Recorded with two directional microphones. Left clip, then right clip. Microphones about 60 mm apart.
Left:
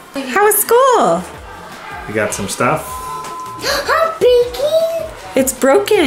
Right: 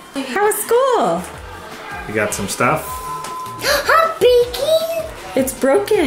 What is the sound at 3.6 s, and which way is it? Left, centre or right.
Music, right.